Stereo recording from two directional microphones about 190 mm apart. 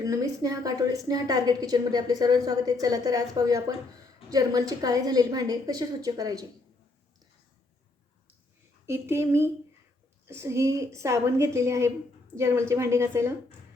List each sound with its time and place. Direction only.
0.0 s a woman's voice: 15° right (ahead or behind)
8.9 s a woman's voice: 15° right (ahead or behind)